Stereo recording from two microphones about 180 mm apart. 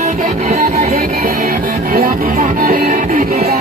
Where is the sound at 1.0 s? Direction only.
50° right (ahead or behind).